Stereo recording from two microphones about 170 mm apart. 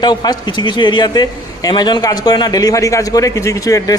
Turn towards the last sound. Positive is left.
turn(degrees=20)  # may be behind; listen again after turning